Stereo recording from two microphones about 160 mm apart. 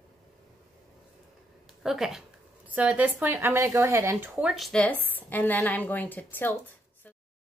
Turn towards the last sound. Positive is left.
turn(degrees=10)  # may be behind; listen again after turning